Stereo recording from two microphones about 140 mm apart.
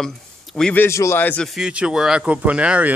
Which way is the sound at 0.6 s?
5° left (ahead or behind).